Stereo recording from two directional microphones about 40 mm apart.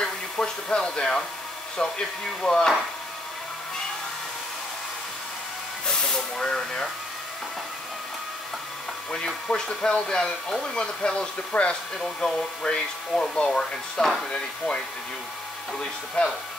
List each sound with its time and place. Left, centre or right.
0.0 s a sound: left
1.8 s speech: left
5.9 s speech: centre
9.1 s speech: centre
11.5 s speech: left
12.0 s speech: centre
16.2 s speech: left